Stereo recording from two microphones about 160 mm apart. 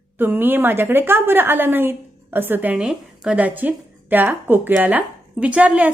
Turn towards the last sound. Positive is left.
turn(degrees=-10)  # may be behind; listen again after turning